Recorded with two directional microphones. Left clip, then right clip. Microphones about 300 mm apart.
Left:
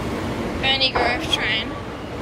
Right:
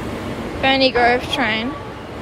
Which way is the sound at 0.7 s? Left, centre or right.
Centre.